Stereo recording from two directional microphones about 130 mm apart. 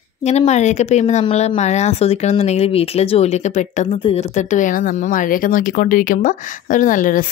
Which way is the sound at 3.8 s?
50° left (ahead or behind).